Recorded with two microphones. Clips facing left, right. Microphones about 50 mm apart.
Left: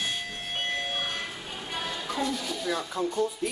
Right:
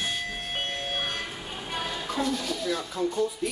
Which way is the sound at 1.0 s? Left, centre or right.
Centre.